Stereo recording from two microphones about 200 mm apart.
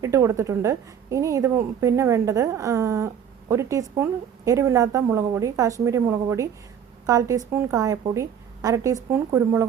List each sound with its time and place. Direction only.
0.0 s a woman's voice: 15° right (ahead or behind)